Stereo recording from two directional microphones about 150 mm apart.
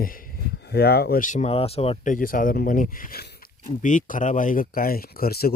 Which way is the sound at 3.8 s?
60° left (ahead or behind).